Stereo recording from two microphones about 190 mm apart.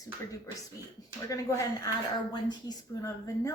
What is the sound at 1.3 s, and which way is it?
Speech, 15° left (ahead or behind).